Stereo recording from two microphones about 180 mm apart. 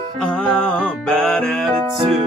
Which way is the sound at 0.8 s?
5° left (ahead or behind).